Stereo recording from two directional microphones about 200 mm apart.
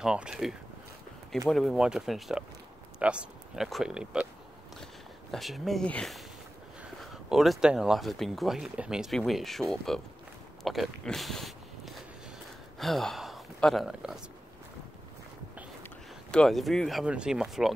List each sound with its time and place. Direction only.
0.0 s speech: 5° right (ahead or behind)
5.3 s speech: centre (ahead or behind)
15.8 s speech: 5° left (ahead or behind)